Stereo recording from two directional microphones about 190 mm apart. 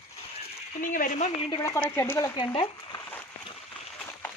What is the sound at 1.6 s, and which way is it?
Speech, 15° left (ahead or behind).